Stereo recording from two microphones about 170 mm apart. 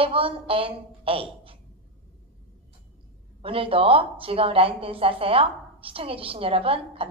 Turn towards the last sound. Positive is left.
turn(degrees=-35)  # may be behind; listen again after turning